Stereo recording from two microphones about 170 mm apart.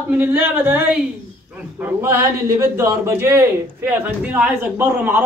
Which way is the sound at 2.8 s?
15° right (ahead or behind).